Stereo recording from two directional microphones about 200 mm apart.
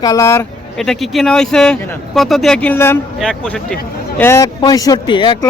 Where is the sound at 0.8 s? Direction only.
Centre (ahead or behind).